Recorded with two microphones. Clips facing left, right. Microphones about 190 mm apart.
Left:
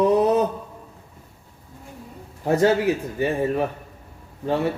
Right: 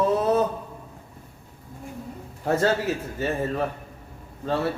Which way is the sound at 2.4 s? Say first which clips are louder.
Left 4 dB; 15° left (ahead or behind).